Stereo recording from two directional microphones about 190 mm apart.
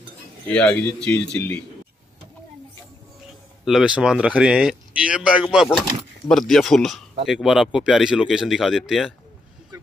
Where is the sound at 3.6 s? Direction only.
5° right (ahead or behind).